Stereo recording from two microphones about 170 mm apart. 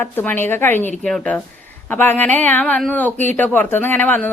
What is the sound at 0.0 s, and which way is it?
A man's voice, 10° left (ahead or behind).